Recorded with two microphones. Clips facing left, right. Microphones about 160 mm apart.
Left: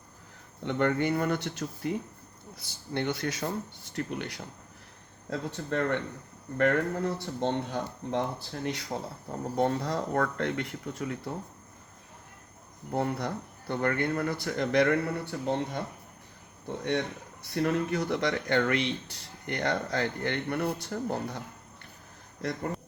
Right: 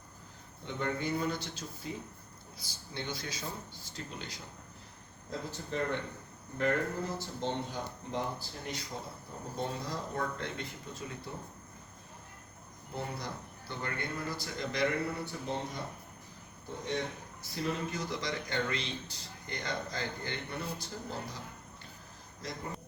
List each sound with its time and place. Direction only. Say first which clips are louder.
0.6 s speech: left 8 dB; 65° left (ahead or behind)
12.9 s speech: left 9 dB; 65° left (ahead or behind)
22.4 s speech: left 9 dB; 60° left (ahead or behind)